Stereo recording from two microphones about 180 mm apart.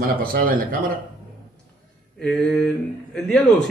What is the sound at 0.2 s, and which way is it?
Speech, 55° right (ahead or behind).